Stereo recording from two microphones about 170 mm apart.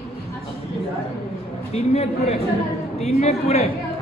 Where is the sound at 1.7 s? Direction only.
40° left (ahead or behind).